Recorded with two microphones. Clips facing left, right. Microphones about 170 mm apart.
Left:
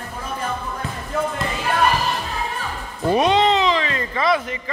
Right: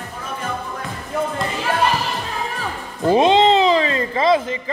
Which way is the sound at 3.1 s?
25° right (ahead or behind).